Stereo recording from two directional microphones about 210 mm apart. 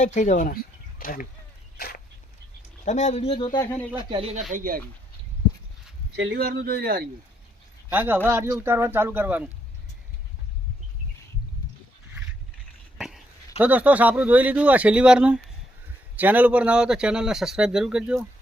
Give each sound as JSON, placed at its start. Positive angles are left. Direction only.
{"t": 0.0, "sound": "speech", "side_deg": 35}
{"t": 2.8, "sound": "speech", "side_deg": 35}
{"t": 3.6, "sound": "speech", "side_deg": 15}
{"t": 4.1, "sound": "speech", "side_deg": -30}
{"t": 4.5, "sound": "speech", "side_deg": -40}
{"t": 6.1, "sound": "speech", "side_deg": -50}
{"t": 7.9, "sound": "speech", "side_deg": -10}
{"t": 13.0, "sound": "a sound", "side_deg": 0}
{"t": 13.6, "sound": "speech", "side_deg": -5}